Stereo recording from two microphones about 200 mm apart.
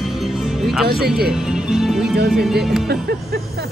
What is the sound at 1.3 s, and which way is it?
Speech, 5° right (ahead or behind).